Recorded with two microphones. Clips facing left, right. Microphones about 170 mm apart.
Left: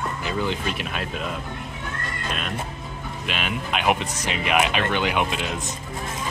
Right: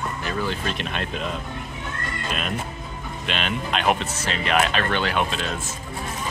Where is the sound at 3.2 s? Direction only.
5° left (ahead or behind).